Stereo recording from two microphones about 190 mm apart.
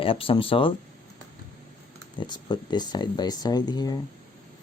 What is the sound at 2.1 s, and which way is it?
Speech, 25° left (ahead or behind).